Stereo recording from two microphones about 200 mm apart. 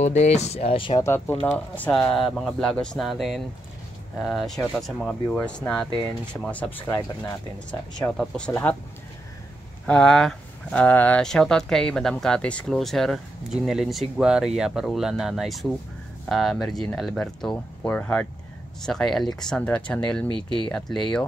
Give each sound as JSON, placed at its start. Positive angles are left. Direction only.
{"t": 0.0, "sound": "speech", "side_deg": 35}
{"t": 1.0, "sound": "speech", "side_deg": 10}
{"t": 8.0, "sound": "speech", "side_deg": 5}
{"t": 9.8, "sound": "speech", "side_deg": 5}
{"t": 20.2, "sound": "speech", "side_deg": -25}
{"t": 20.6, "sound": "speech", "side_deg": 5}